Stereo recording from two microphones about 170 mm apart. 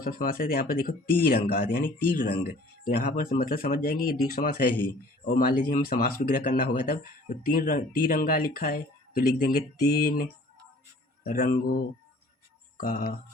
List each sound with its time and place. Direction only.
0.0 s speech: 60° left (ahead or behind)